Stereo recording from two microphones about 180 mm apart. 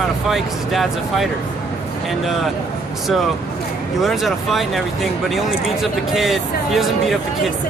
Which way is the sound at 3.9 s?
Centre (ahead or behind).